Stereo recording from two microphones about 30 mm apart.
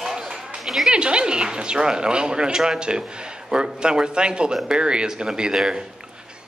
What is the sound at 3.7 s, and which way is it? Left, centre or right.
A man's voice, right.